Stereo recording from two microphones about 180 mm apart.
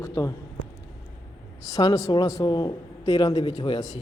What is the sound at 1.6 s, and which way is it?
A man's voice, 20° left (ahead or behind).